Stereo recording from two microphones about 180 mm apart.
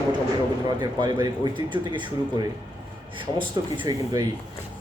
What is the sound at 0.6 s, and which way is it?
A man's voice, 25° right (ahead or behind).